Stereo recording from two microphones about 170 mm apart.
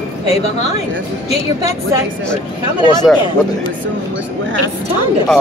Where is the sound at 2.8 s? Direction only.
25° left (ahead or behind).